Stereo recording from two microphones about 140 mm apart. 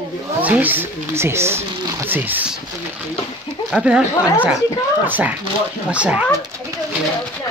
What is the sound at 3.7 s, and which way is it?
Speech, 5° right (ahead or behind).